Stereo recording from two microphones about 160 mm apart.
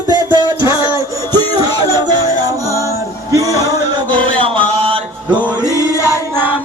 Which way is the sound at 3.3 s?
20° right (ahead or behind).